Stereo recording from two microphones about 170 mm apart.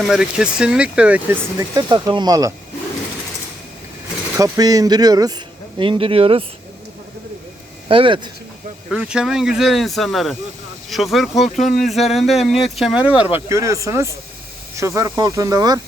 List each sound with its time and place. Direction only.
0.0 s speech: 5° right (ahead or behind); by 2.5 s 20° right (ahead or behind)
4.4 s a man's voice: 20° right (ahead or behind)
7.9 s speech: 30° right (ahead or behind)
8.9 s speech: 5° right (ahead or behind)
13.5 s a man's voice: 15° right (ahead or behind)